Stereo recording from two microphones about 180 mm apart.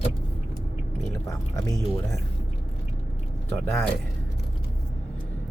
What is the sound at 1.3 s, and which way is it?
Speech, 20° left (ahead or behind).